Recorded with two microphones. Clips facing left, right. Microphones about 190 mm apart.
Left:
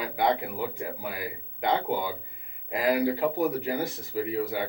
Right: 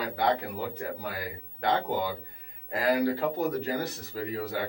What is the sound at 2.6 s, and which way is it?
A man's voice, 10° left (ahead or behind).